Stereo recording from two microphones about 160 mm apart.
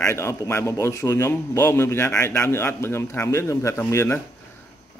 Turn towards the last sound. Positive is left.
turn(degrees=15)  # may be behind; listen again after turning